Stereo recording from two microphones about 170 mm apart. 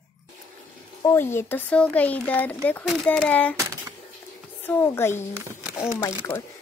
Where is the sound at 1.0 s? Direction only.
15° left (ahead or behind).